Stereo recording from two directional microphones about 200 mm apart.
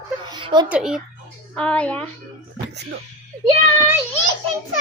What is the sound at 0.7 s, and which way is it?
A child's voice, 5° right (ahead or behind).